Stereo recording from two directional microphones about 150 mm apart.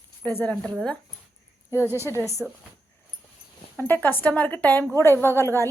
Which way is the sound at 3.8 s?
10° left (ahead or behind).